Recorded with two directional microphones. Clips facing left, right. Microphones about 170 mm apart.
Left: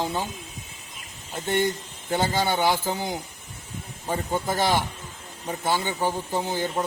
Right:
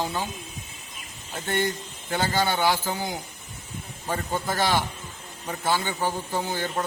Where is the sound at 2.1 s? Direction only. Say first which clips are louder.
Left 1 dB; 20° left (ahead or behind).